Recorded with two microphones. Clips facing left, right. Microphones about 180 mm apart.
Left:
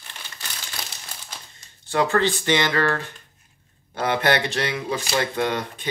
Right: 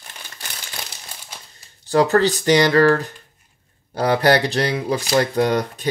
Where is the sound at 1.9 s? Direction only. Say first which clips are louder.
Right 5 dB; 40° right (ahead or behind).